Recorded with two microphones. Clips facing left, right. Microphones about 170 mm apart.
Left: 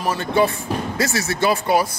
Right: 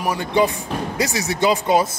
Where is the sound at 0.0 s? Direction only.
15° right (ahead or behind).